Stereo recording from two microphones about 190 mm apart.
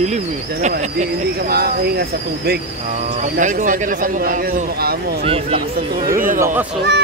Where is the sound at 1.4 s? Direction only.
55° right (ahead or behind).